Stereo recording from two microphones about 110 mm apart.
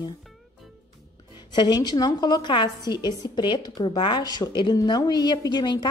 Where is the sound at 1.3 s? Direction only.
40° left (ahead or behind).